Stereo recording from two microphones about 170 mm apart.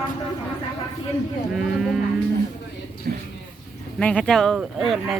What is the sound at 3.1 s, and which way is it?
Speech, 60° right (ahead or behind).